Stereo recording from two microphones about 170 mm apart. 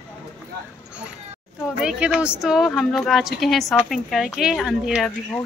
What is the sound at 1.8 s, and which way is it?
A woman's voice, 5° right (ahead or behind).